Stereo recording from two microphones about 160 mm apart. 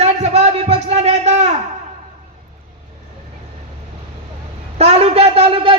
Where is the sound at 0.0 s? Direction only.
45° right (ahead or behind).